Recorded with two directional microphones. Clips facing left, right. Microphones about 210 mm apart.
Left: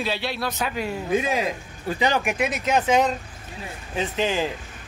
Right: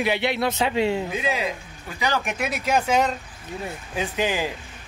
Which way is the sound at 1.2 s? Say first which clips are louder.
Left 1 dB; 45° left (ahead or behind).